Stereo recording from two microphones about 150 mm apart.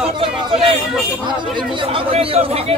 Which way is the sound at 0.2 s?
35° right (ahead or behind).